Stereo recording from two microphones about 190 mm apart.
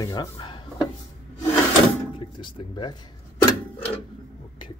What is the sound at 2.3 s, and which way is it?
Speech, 25° left (ahead or behind).